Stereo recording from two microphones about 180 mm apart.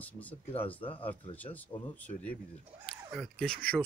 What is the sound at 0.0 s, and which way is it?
Speech, 10° left (ahead or behind).